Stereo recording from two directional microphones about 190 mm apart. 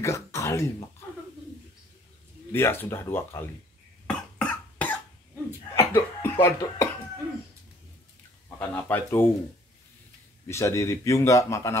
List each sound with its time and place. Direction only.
0.0 s speech: 15° left (ahead or behind)
2.5 s a man's voice: 10° left (ahead or behind)
4.4 s cough: 5° left (ahead or behind)
8.5 s a man's voice: 10° left (ahead or behind)
10.5 s a man's voice: 15° left (ahead or behind)